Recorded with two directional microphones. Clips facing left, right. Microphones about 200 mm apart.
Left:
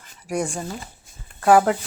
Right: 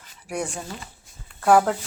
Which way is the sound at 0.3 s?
10° left (ahead or behind).